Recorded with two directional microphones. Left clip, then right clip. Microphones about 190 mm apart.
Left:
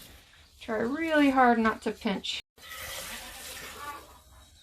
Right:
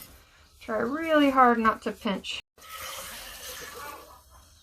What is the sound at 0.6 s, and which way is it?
Speech, 35° left (ahead or behind).